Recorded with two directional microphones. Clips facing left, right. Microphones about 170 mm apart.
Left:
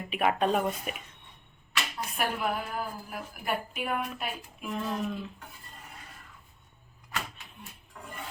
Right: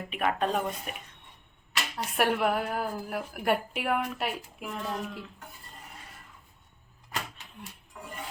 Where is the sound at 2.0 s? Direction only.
70° right (ahead or behind).